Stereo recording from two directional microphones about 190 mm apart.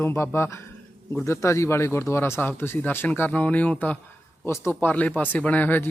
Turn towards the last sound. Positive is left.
turn(degrees=10)  # may be behind; listen again after turning